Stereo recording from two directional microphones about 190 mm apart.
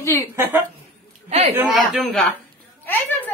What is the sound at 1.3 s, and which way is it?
Speech, 35° right (ahead or behind).